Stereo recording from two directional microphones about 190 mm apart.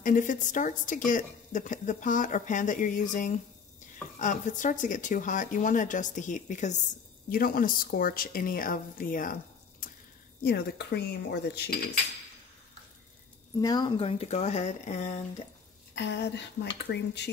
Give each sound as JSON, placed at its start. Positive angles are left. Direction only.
{"t": 0.0, "sound": "a woman's voice", "side_deg": 45}
{"t": 7.2, "sound": "a woman's voice", "side_deg": 50}
{"t": 10.4, "sound": "speech", "side_deg": 55}
{"t": 13.6, "sound": "speech", "side_deg": 20}
{"t": 15.9, "sound": "speech", "side_deg": 65}